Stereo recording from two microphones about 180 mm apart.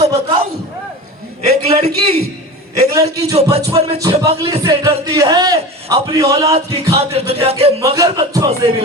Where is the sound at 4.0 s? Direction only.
30° right (ahead or behind).